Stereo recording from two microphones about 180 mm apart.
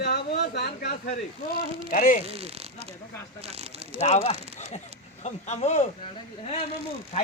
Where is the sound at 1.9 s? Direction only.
45° left (ahead or behind).